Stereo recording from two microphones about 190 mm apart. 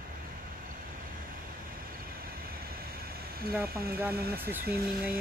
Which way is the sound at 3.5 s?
10° right (ahead or behind).